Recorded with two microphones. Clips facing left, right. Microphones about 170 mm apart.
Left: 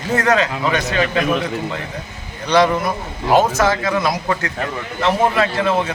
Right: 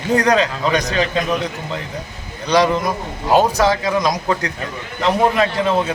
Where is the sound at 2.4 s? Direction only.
10° right (ahead or behind).